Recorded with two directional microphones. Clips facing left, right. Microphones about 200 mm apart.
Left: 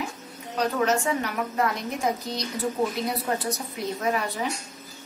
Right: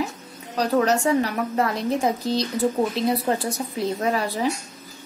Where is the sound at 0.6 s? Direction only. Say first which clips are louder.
Right 4 dB; 35° right (ahead or behind).